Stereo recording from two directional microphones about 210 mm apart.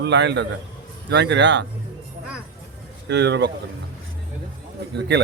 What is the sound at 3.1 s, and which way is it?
Speech, 55° right (ahead or behind).